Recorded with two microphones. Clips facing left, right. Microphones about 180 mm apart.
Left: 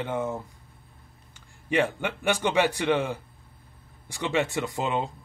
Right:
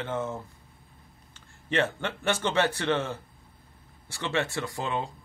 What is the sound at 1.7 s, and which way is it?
A man's voice, 10° left (ahead or behind).